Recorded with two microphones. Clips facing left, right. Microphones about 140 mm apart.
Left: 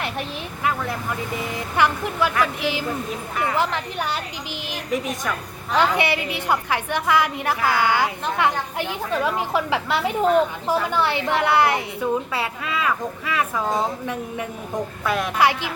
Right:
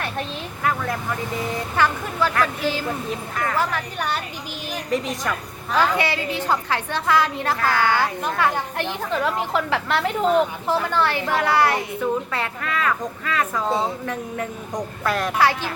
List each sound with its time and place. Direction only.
0.0 s a woman's voice: 15° left (ahead or behind)
1.7 s a woman's voice: 15° left (ahead or behind)
4.9 s a woman's voice: centre (ahead or behind)
5.7 s a woman's voice: 20° left (ahead or behind)
15.0 s a woman's voice: centre (ahead or behind)
15.4 s a woman's voice: 15° left (ahead or behind)